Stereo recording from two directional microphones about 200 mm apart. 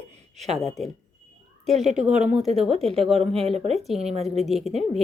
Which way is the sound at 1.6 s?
35° right (ahead or behind).